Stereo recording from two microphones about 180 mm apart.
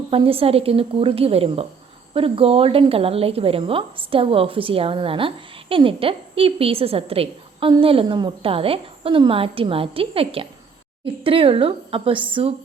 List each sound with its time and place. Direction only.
0.1 s a woman's voice: 30° right (ahead or behind)